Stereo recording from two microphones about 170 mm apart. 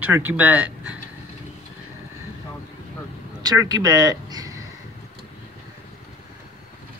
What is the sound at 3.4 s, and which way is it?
Speech, 20° right (ahead or behind).